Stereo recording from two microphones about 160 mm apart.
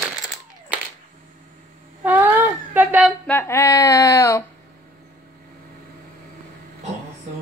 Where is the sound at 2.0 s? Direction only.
10° right (ahead or behind).